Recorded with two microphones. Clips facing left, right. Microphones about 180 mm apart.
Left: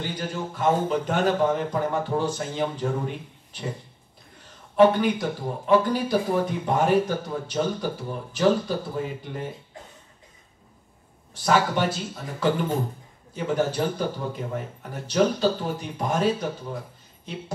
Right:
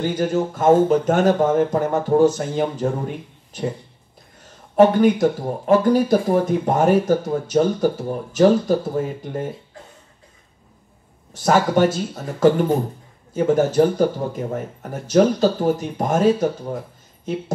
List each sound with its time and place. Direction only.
0.0 s speech: 45° right (ahead or behind)
4.7 s speech: 45° right (ahead or behind)
11.4 s speech: 45° right (ahead or behind)